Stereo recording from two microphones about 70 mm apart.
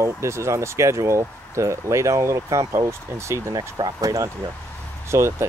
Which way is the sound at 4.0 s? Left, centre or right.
Right.